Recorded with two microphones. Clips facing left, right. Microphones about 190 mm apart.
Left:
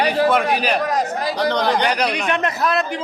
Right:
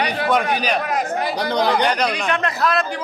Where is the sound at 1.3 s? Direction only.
10° right (ahead or behind).